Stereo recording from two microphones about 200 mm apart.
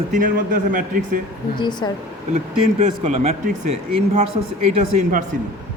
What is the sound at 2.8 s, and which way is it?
Speech, 35° right (ahead or behind).